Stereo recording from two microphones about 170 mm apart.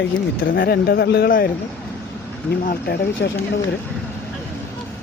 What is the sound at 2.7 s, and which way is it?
Speech, 70° left (ahead or behind).